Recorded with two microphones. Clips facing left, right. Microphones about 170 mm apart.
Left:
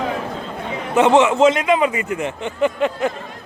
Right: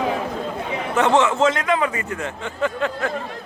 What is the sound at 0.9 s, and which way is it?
A man's voice, 15° left (ahead or behind).